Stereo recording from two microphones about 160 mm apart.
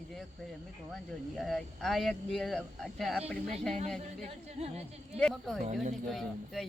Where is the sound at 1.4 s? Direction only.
Centre (ahead or behind).